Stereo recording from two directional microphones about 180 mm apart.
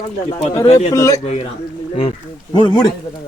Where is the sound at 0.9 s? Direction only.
15° left (ahead or behind).